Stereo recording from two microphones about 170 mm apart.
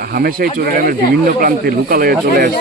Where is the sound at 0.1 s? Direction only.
60° right (ahead or behind).